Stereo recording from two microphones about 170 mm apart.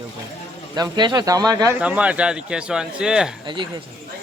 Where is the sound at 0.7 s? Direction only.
25° right (ahead or behind).